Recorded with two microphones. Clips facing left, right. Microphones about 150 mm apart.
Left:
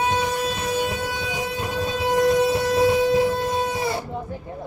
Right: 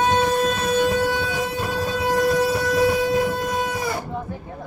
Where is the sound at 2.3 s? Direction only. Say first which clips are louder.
Left 1 dB; 20° left (ahead or behind).